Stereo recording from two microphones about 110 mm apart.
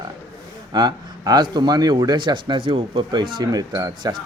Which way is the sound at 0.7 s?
40° right (ahead or behind).